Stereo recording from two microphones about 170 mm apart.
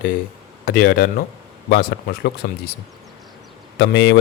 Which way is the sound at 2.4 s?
70° left (ahead or behind).